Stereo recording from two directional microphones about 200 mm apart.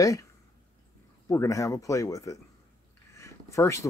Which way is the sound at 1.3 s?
15° left (ahead or behind).